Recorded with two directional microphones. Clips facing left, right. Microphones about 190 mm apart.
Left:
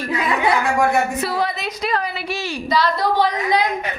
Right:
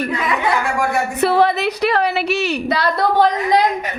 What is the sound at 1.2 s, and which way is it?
A woman's voice, 65° right (ahead or behind).